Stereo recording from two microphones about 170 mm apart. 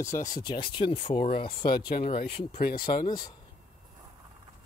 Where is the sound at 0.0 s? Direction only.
20° left (ahead or behind).